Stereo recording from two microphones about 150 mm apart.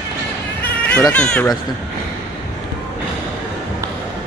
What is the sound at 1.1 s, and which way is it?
Speech, 10° left (ahead or behind).